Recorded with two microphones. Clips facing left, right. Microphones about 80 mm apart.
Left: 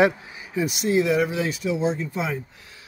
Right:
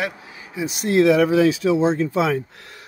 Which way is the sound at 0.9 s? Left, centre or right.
Right.